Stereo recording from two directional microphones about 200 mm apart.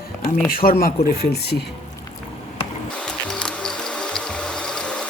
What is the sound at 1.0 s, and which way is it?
Speech, 55° left (ahead or behind).